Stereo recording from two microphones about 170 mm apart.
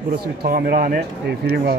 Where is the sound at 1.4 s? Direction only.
70° right (ahead or behind).